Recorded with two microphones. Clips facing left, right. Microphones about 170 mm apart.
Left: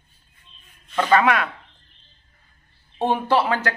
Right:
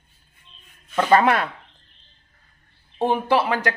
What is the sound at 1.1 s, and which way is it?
Speech, 30° right (ahead or behind).